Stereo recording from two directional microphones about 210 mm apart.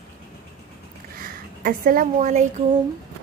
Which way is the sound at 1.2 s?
45° right (ahead or behind).